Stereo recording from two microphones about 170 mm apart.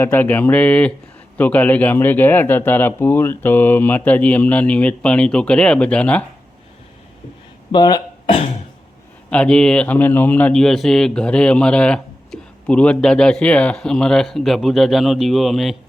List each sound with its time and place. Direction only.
0.0 s a man's voice: 10° left (ahead or behind)
7.7 s speech: 25° left (ahead or behind)
9.3 s speech: 5° left (ahead or behind)